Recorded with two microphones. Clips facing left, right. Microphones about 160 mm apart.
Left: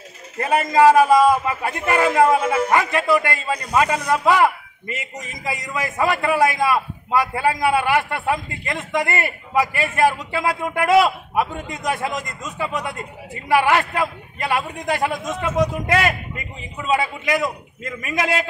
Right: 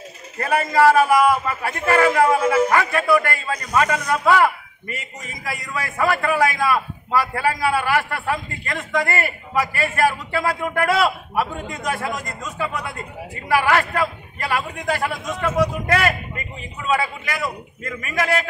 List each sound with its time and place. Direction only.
0.4 s a man's voice: 20° left (ahead or behind)